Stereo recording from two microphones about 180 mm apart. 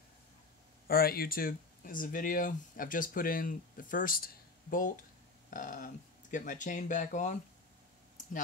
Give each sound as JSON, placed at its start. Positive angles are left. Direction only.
{"t": 0.8, "sound": "speech", "side_deg": 55}